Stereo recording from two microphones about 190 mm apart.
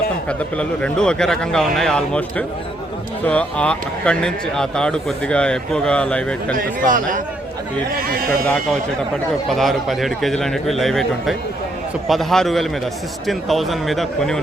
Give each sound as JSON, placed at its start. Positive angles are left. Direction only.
{"t": 0.3, "sound": "speech", "side_deg": 5}
{"t": 6.6, "sound": "speech", "side_deg": -45}
{"t": 8.0, "sound": "speech", "side_deg": -50}
{"t": 9.5, "sound": "speech", "side_deg": 0}